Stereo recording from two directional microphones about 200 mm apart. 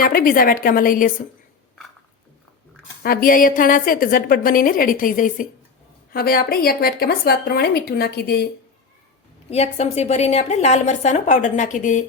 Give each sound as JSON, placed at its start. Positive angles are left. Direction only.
{"t": 0.0, "sound": "a woman's voice", "side_deg": 45}
{"t": 3.0, "sound": "a woman's voice", "side_deg": 45}
{"t": 9.5, "sound": "a woman's voice", "side_deg": 30}